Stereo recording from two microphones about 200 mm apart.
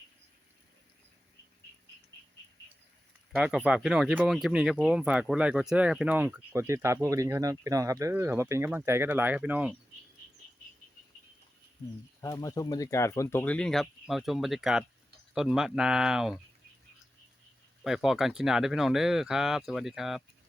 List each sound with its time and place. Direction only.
3.3 s speech: 5° right (ahead or behind)
12.2 s speech: 15° left (ahead or behind); by 16.4 s 5° right (ahead or behind)
17.8 s speech: centre (ahead or behind)